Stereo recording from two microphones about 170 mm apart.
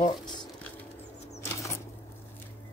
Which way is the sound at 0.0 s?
25° left (ahead or behind).